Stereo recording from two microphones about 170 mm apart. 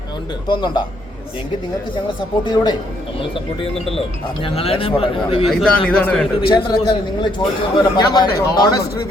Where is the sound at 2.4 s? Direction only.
25° left (ahead or behind).